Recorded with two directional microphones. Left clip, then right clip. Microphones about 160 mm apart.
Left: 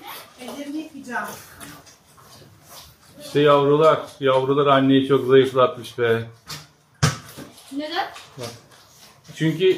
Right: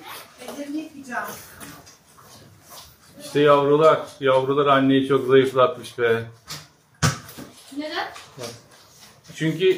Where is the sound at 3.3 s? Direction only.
20° left (ahead or behind).